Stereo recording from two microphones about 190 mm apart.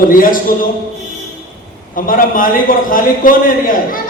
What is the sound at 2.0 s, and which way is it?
A man's voice, 45° left (ahead or behind).